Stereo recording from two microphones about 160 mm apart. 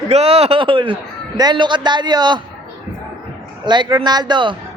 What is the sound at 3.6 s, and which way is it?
Speech, 30° right (ahead or behind).